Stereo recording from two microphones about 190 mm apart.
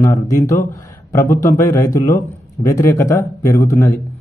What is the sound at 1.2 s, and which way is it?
Speech, 45° left (ahead or behind).